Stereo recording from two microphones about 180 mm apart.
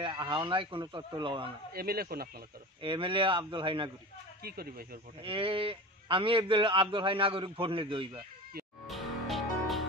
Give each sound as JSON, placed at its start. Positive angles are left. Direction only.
{"t": 0.0, "sound": "a man's voice", "side_deg": -25}
{"t": 1.7, "sound": "a man's voice", "side_deg": -55}
{"t": 2.8, "sound": "a man's voice", "side_deg": -30}
{"t": 4.4, "sound": "a man's voice", "side_deg": -55}
{"t": 5.2, "sound": "a man's voice", "side_deg": -30}
{"t": 8.8, "sound": "music", "side_deg": 0}